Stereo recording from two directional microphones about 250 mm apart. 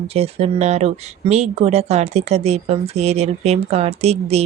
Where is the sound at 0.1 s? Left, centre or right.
Right.